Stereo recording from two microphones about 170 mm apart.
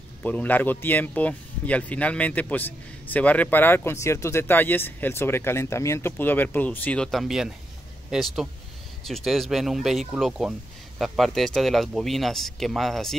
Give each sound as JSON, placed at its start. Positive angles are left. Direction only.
{"t": 0.2, "sound": "speech", "side_deg": 10}